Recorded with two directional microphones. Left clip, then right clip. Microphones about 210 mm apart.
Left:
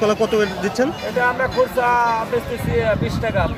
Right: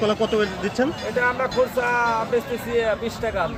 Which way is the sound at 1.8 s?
20° right (ahead or behind).